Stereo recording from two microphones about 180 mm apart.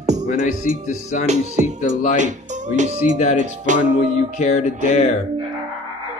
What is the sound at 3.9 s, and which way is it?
Music, 40° left (ahead or behind).